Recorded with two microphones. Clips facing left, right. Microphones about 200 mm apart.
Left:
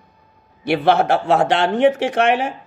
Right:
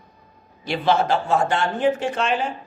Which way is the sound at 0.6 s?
65° left (ahead or behind).